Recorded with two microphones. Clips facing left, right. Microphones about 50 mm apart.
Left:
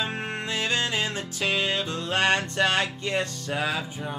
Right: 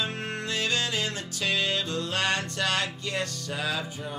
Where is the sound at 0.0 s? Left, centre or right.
Left.